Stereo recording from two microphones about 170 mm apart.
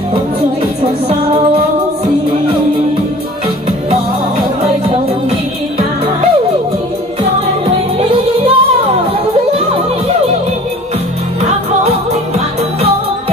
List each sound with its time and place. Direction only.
7.6 s music: 35° right (ahead or behind)